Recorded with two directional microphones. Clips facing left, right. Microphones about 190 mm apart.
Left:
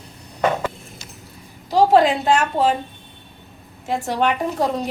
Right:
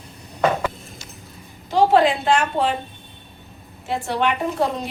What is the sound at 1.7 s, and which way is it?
A woman's voice, 40° left (ahead or behind).